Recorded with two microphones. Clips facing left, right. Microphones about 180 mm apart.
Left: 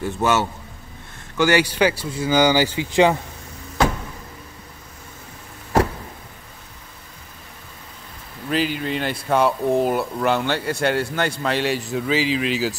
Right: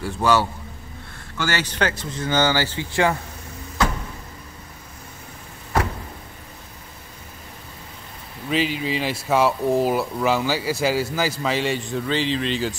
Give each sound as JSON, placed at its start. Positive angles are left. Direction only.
{"t": 0.0, "sound": "a man's voice", "side_deg": 20}
{"t": 8.5, "sound": "speech", "side_deg": 0}